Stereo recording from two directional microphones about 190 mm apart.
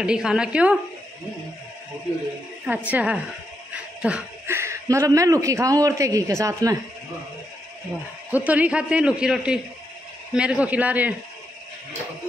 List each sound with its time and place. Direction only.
0.0 s a man's voice: 5° right (ahead or behind)
2.6 s a man's voice: 5° right (ahead or behind)
8.3 s a man's voice: 10° right (ahead or behind)